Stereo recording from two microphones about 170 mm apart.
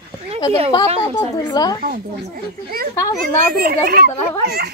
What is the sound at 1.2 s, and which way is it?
Speech, 25° left (ahead or behind).